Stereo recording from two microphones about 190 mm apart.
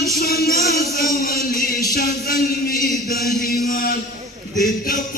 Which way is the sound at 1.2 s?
55° left (ahead or behind).